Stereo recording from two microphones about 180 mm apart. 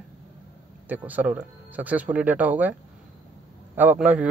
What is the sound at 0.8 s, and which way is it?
Speech, 10° right (ahead or behind).